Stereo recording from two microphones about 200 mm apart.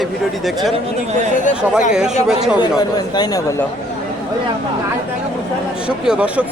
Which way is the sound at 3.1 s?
20° left (ahead or behind).